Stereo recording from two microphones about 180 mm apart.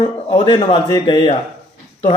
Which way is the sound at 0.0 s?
30° left (ahead or behind).